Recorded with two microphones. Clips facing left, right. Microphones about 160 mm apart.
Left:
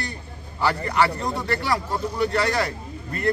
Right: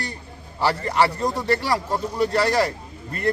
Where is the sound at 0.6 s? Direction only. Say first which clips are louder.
Right 1 dB; 35° right (ahead or behind).